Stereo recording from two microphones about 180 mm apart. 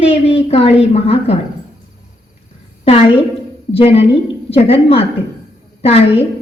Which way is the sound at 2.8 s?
30° left (ahead or behind).